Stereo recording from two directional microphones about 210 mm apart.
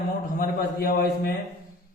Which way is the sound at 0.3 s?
45° left (ahead or behind).